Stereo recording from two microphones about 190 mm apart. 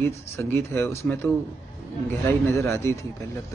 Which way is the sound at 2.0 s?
10° left (ahead or behind).